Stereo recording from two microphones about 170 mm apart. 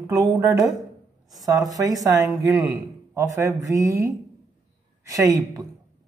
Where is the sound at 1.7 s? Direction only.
20° right (ahead or behind).